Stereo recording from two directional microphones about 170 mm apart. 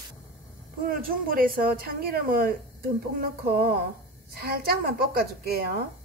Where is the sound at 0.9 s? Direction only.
55° right (ahead or behind).